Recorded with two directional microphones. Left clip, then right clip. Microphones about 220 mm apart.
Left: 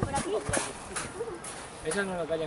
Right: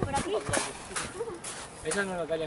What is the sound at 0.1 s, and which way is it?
Clip-clop, 5° right (ahead or behind).